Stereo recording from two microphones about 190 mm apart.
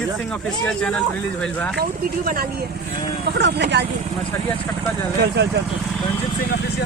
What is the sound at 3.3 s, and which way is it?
Speech, 60° right (ahead or behind).